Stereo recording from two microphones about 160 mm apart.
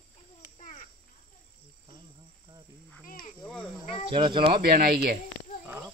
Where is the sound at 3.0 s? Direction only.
60° left (ahead or behind).